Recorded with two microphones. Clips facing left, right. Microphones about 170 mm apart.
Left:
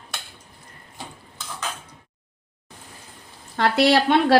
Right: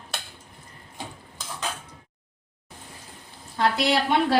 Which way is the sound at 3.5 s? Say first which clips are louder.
Left 5 dB; 75° left (ahead or behind).